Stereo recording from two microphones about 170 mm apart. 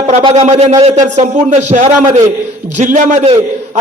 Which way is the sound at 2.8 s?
50° right (ahead or behind).